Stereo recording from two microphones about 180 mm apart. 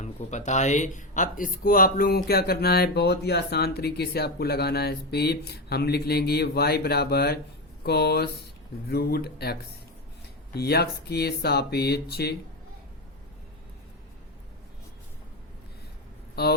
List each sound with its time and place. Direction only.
0.0 s speech: 40° left (ahead or behind); by 12.3 s 60° left (ahead or behind)
16.3 s speech: 60° left (ahead or behind)